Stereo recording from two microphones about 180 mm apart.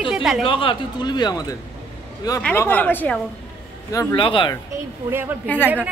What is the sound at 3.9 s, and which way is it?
Speech, 20° left (ahead or behind).